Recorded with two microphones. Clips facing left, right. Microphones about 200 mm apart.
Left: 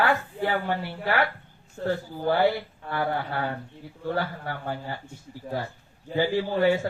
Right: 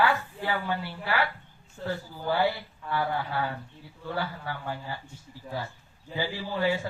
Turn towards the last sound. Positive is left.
turn(degrees=55)  # may be behind; listen again after turning